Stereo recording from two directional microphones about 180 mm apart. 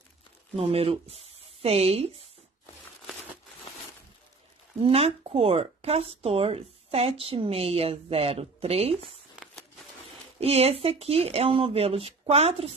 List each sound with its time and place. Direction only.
0.6 s speech: 35° right (ahead or behind)
4.7 s speech: 30° right (ahead or behind)
9.4 s a sound: centre (ahead or behind)
10.4 s speech: 35° right (ahead or behind)